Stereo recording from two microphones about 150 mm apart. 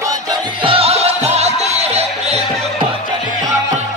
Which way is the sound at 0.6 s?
40° right (ahead or behind).